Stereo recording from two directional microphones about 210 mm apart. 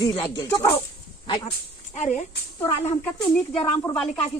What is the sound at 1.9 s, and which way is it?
Speech, 35° left (ahead or behind).